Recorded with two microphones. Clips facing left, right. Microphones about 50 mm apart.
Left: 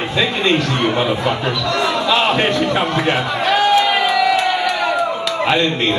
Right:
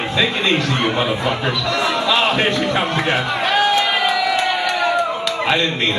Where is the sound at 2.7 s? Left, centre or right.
Centre.